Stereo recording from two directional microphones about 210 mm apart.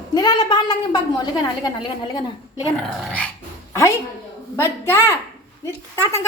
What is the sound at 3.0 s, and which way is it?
Dog, 5° left (ahead or behind).